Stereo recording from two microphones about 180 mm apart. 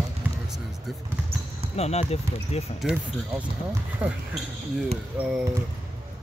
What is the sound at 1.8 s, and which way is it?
Speech, 35° left (ahead or behind).